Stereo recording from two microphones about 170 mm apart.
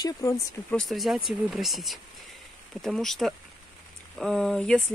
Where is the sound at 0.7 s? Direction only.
Centre (ahead or behind).